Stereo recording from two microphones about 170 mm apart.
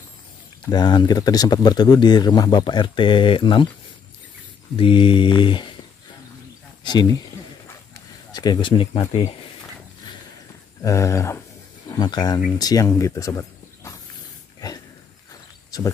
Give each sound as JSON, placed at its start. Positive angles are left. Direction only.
{"t": 0.7, "sound": "speech", "side_deg": 25}
{"t": 4.7, "sound": "speech", "side_deg": 30}
{"t": 6.8, "sound": "speech", "side_deg": 25}
{"t": 7.9, "sound": "a sound", "side_deg": 25}
{"t": 10.8, "sound": "speech", "side_deg": 15}